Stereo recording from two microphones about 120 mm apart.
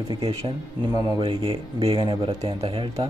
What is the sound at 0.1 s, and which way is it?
Speech, 45° right (ahead or behind).